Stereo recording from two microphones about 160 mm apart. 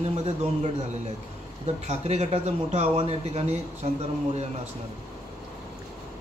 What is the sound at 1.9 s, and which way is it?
Speech, 45° right (ahead or behind).